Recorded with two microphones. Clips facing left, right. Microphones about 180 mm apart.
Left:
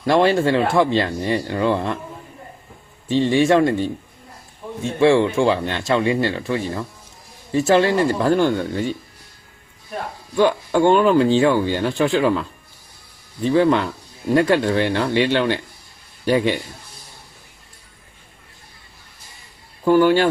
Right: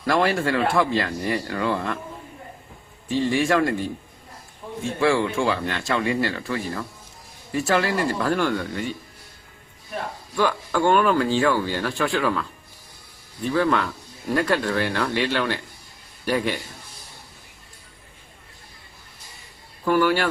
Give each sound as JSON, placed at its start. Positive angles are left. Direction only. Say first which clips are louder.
{"t": 0.0, "sound": "speech", "louder": "left 5 dB", "side_deg": 25}
{"t": 3.1, "sound": "speech", "louder": "left 5 dB", "side_deg": 25}
{"t": 4.9, "sound": "speech", "louder": "left 6 dB", "side_deg": 25}
{"t": 10.3, "sound": "speech", "louder": "left 6 dB", "side_deg": 25}
{"t": 13.5, "sound": "speech", "louder": "left 5 dB", "side_deg": 25}
{"t": 19.8, "sound": "speech", "louder": "left 6 dB", "side_deg": 25}